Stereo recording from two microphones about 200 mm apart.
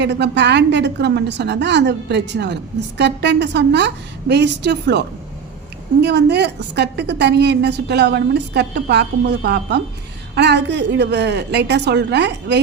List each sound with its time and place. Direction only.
0.0 s a woman's voice: 60° right (ahead or behind)